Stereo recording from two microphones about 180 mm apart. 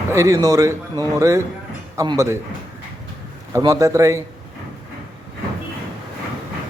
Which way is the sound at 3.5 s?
20° right (ahead or behind).